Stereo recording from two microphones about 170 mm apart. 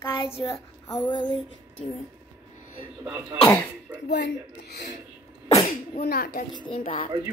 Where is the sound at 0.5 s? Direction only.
15° left (ahead or behind).